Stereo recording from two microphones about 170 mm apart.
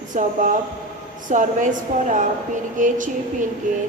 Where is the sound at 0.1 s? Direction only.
50° right (ahead or behind).